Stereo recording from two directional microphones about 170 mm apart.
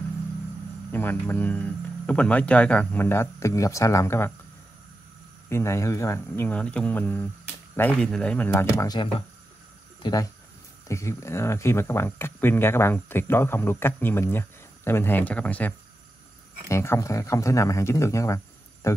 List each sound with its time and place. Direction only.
0.9 s speech: 10° left (ahead or behind)
5.5 s speech: 15° left (ahead or behind)